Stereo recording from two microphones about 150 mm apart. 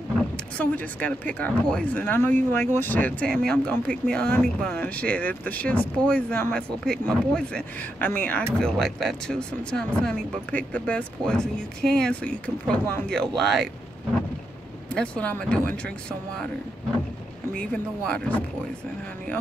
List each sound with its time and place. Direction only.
0.6 s speech: 10° left (ahead or behind)
14.9 s speech: 10° left (ahead or behind)
17.6 s speech: 5° left (ahead or behind)